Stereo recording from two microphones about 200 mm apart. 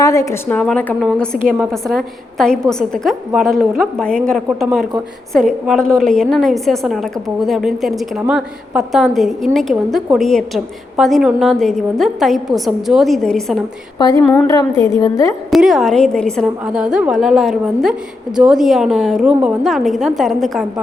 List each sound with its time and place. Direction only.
0.0 s a woman's voice: 15° left (ahead or behind)
14.0 s a woman's voice: 20° left (ahead or behind)
15.4 s a woman's voice: centre (ahead or behind)